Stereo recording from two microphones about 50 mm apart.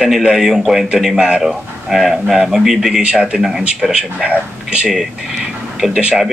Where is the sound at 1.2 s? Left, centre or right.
Right.